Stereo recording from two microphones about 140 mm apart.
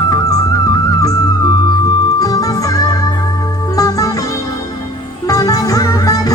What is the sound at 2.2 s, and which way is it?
Music, 25° left (ahead or behind).